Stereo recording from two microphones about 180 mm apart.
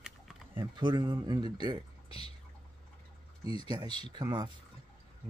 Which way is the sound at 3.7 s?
25° right (ahead or behind).